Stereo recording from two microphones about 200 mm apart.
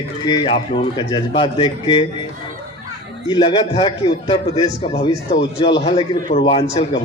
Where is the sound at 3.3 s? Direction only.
20° left (ahead or behind).